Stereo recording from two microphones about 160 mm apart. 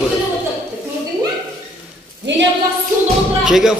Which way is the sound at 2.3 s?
90° right.